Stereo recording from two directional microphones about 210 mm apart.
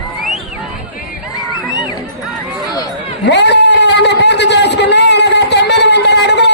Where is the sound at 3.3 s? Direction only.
55° left (ahead or behind).